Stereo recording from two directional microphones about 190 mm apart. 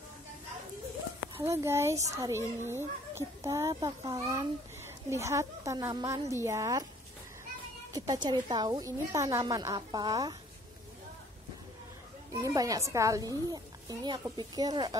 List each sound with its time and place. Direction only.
1.4 s a child's voice: 15° right (ahead or behind)
7.9 s speech: 20° right (ahead or behind)
12.4 s speech: 15° right (ahead or behind)